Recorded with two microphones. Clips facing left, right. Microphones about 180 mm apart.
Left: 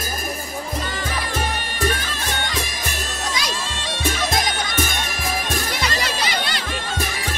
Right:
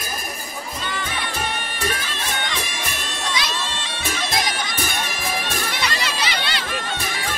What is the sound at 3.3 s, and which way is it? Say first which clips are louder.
Bagpipes: even; 45° left (ahead or behind).